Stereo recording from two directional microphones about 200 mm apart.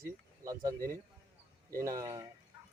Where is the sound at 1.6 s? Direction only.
15° right (ahead or behind).